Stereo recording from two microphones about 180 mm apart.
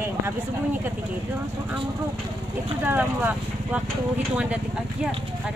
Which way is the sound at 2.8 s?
10° right (ahead or behind).